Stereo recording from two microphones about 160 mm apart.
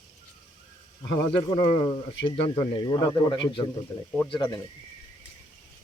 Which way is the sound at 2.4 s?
25° left (ahead or behind).